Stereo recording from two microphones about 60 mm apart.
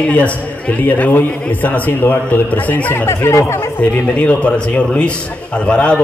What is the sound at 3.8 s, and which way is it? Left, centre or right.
A man's voice, left.